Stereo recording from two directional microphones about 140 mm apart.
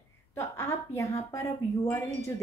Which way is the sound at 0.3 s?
15° left (ahead or behind).